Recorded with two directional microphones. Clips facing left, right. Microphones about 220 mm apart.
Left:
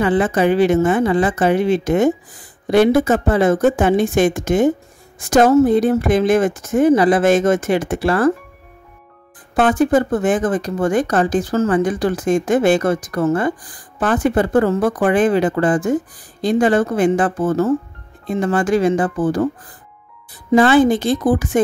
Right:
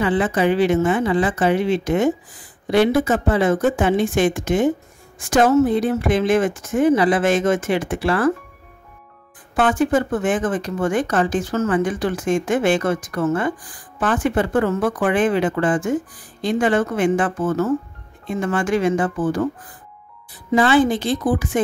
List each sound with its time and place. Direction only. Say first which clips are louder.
0.0 s speech: left 3 dB; 45° left (ahead or behind)
9.6 s speech: left 3 dB; 40° left (ahead or behind)
20.5 s speech: left 4 dB; 45° left (ahead or behind)